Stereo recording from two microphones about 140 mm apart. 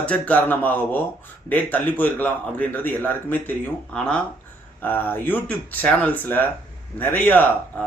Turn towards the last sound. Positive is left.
turn(degrees=10)  # may be behind; listen again after turning